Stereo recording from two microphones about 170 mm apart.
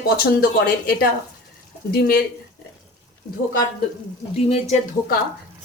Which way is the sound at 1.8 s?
60° left (ahead or behind).